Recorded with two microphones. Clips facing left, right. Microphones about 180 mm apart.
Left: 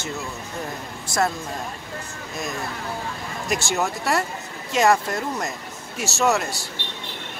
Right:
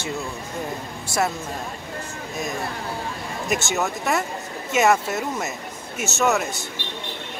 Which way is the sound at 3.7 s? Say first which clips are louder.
Left 2 dB; centre (ahead or behind).